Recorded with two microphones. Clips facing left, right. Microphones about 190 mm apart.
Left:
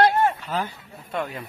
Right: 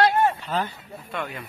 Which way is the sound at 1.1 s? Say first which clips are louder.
Left 3 dB; 35° left (ahead or behind).